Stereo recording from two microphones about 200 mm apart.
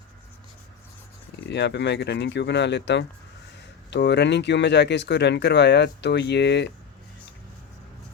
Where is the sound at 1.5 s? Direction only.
60° left (ahead or behind).